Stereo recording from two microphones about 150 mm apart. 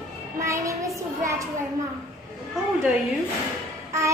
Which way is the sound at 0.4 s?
20° right (ahead or behind).